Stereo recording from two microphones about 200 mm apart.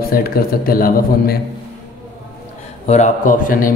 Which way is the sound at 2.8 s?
35° left (ahead or behind).